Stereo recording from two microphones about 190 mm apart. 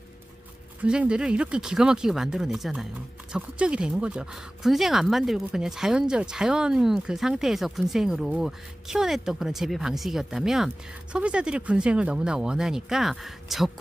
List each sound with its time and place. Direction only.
0.8 s speech: 5° right (ahead or behind)